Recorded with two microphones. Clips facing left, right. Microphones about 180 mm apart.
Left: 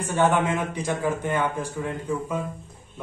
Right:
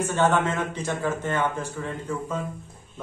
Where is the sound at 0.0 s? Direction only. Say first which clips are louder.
Even; 10° left (ahead or behind).